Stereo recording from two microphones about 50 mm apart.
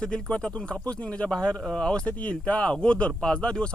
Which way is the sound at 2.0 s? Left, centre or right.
Left.